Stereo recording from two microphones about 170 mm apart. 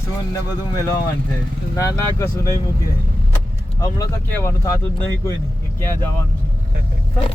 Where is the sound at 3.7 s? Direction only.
20° left (ahead or behind).